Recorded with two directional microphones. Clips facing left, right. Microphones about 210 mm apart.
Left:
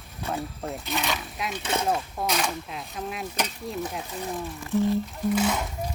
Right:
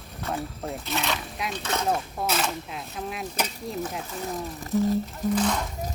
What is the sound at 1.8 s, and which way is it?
Speech, centre (ahead or behind).